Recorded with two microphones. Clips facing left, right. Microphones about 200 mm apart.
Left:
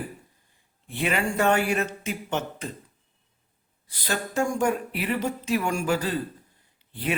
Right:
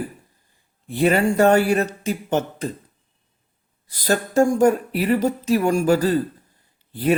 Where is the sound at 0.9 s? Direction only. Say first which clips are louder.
Right 9 dB; 40° right (ahead or behind).